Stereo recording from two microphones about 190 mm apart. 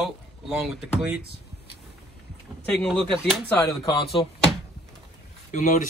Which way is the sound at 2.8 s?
5° left (ahead or behind).